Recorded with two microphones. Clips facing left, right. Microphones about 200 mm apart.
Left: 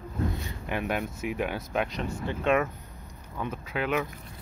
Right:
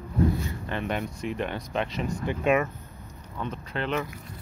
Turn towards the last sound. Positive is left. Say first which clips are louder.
# left 1 dB
turn(degrees=5)  # may be behind; listen again after turning